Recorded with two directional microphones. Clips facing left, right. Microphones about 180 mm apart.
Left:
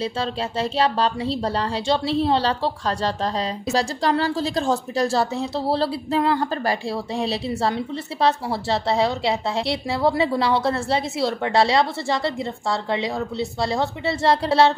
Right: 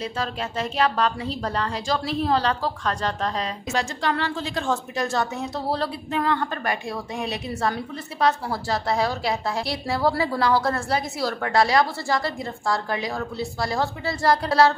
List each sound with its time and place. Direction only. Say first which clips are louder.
0.0 s a woman's voice: left 3 dB; 30° left (ahead or behind)